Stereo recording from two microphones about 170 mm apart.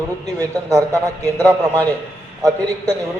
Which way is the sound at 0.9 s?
15° right (ahead or behind).